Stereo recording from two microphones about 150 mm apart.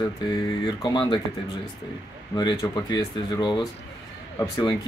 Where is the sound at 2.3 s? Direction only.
30° left (ahead or behind).